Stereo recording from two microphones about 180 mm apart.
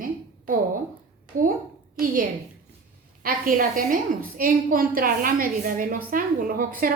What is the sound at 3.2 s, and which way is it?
A woman's voice, 50° right (ahead or behind).